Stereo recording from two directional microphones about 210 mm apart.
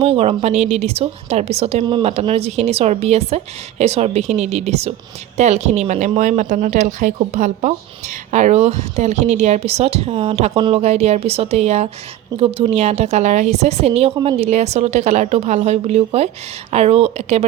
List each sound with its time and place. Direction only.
0.0 s speech: 30° right (ahead or behind)